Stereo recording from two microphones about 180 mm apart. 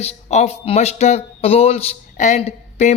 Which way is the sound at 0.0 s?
35° left (ahead or behind).